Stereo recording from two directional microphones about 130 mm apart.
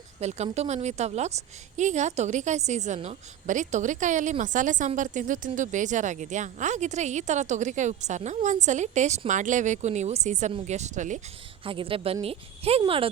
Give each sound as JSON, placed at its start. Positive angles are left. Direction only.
{"t": 0.2, "sound": "a woman's voice", "side_deg": -55}
{"t": 11.6, "sound": "a woman's voice", "side_deg": -45}